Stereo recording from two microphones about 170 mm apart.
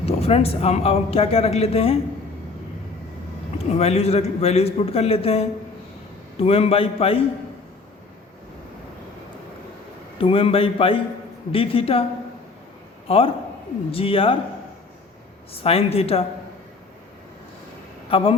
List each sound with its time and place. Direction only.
0.0 s speech: 35° left (ahead or behind)
3.6 s speech: 40° left (ahead or behind)
10.2 s speech: 35° left (ahead or behind)
13.1 s a man's voice: 35° left (ahead or behind)
15.5 s speech: 35° left (ahead or behind)
18.1 s speech: 30° left (ahead or behind)